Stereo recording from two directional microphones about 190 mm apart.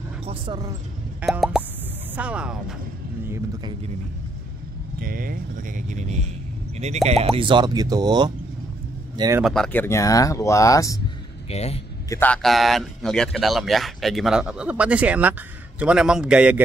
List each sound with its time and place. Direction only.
0.2 s speech: 30° right (ahead or behind)
1.2 s speech: centre (ahead or behind)
5.0 s speech: 50° right (ahead or behind); by 9.4 s 20° right (ahead or behind)
9.4 s speech: centre (ahead or behind)
11.4 s speech: 35° left (ahead or behind)
12.1 s speech: 10° left (ahead or behind)